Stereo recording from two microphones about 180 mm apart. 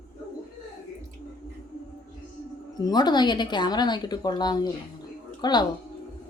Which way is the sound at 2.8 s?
25° left (ahead or behind).